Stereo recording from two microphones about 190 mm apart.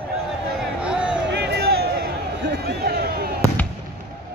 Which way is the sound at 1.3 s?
60° right (ahead or behind).